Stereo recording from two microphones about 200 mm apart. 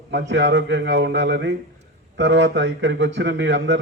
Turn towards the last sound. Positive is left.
turn(degrees=-60)  # may be behind; listen again after turning